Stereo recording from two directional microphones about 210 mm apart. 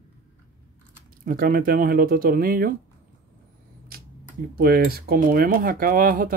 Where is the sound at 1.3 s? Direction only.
45° right (ahead or behind).